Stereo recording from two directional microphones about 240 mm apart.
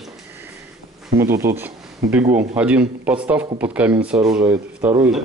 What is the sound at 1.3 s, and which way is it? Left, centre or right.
A man's voice, centre.